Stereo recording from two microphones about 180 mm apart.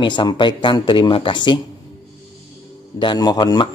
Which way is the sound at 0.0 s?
25° left (ahead or behind).